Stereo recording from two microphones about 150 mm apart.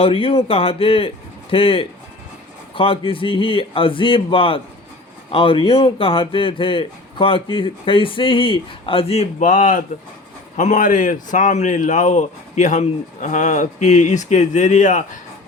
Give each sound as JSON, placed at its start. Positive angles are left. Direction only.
{"t": 0.0, "sound": "a man's voice", "side_deg": 35}
{"t": 9.4, "sound": "a man's voice", "side_deg": 60}